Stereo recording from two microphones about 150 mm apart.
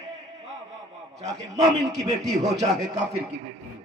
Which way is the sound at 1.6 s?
50° right (ahead or behind).